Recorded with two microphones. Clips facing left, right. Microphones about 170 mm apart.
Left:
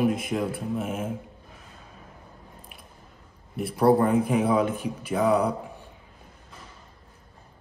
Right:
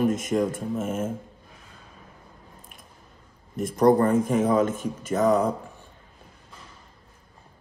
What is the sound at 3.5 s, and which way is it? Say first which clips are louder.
Speech: right 2 dB; 45° right (ahead or behind).